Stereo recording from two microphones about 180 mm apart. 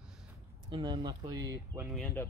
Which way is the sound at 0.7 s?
25° right (ahead or behind).